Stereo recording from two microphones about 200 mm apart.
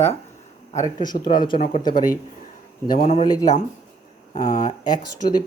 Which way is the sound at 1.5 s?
45° left (ahead or behind).